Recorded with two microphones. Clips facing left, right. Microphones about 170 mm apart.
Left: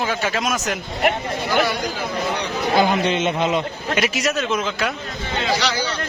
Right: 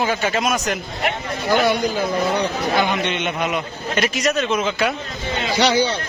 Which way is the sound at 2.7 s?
30° left (ahead or behind).